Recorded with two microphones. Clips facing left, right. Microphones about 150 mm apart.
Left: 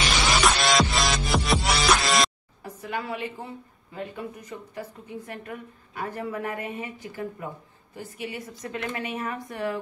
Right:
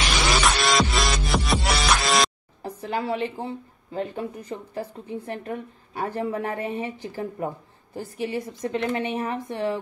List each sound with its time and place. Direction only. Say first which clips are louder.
0.3 s music: even; centre (ahead or behind)
2.6 s speech: right 4 dB; 30° right (ahead or behind)